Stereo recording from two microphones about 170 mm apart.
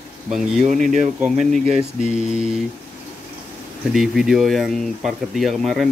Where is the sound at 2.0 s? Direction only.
40° left (ahead or behind).